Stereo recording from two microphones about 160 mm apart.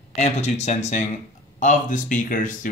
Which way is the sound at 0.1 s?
45° left (ahead or behind).